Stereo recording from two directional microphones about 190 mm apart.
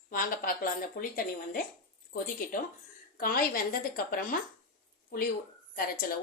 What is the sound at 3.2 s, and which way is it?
Speech, 50° left (ahead or behind).